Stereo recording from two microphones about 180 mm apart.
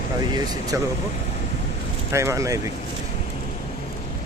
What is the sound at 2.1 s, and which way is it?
Speech, 15° right (ahead or behind).